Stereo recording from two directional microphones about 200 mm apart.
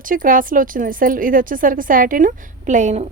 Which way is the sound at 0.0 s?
45° right (ahead or behind).